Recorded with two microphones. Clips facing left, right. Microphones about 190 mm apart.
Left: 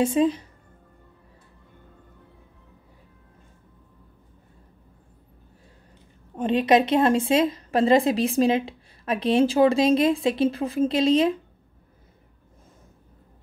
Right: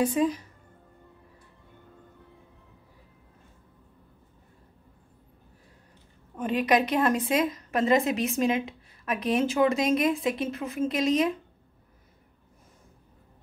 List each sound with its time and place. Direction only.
0.0 s a woman's voice: 25° left (ahead or behind)
6.3 s a woman's voice: 30° left (ahead or behind)